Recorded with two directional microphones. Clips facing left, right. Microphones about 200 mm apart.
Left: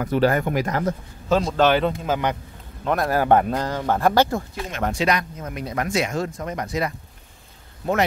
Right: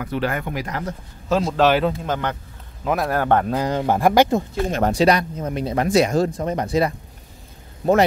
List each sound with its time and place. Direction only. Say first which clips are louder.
0.0 s speech: left 5 dB; 40° left (ahead or behind)
1.3 s speech: right 1 dB; centre (ahead or behind)
3.2 s speech: left 3 dB; 10° left (ahead or behind)
3.5 s speech: right 3 dB; 15° right (ahead or behind)
4.6 s speech: right 5 dB; 35° right (ahead or behind)